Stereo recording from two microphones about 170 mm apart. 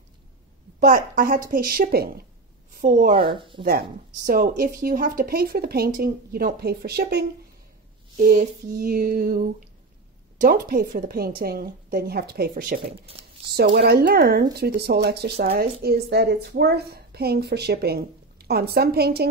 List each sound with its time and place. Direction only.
0.7 s speech: 55° right (ahead or behind)
2.7 s a woman's voice: 55° right (ahead or behind)
3.2 s speech: 30° right (ahead or behind)
4.3 s speech: 55° right (ahead or behind)
8.2 s speech: 55° right (ahead or behind)
13.0 s a sound: 35° right (ahead or behind)
13.7 s a woman's voice: 70° right (ahead or behind)